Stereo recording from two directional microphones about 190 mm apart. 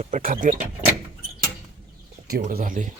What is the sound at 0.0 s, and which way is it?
Speech, 45° right (ahead or behind).